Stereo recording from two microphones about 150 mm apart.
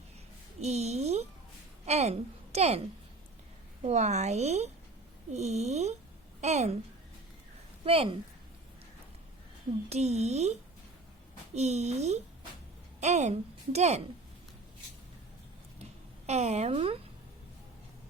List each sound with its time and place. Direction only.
0.6 s a woman's voice: 45° right (ahead or behind)
3.8 s a woman's voice: 50° right (ahead or behind)
7.9 s speech: 40° right (ahead or behind)
9.9 s a woman's voice: 45° right (ahead or behind)
16.2 s a woman's voice: 45° right (ahead or behind)